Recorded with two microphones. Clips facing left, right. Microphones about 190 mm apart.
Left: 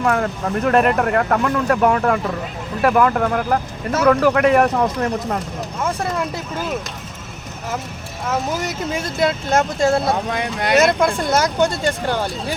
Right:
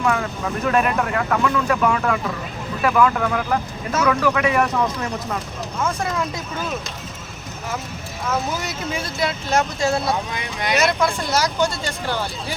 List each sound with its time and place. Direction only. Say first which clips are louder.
0.0 s speech: left 3 dB; 45° left (ahead or behind)
8.6 s speech: left 3 dB; 50° left (ahead or behind)